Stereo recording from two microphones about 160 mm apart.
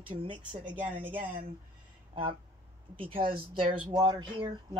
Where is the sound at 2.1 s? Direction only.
35° right (ahead or behind).